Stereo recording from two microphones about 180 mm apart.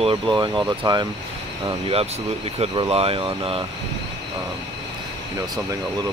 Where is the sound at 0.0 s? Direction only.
25° right (ahead or behind).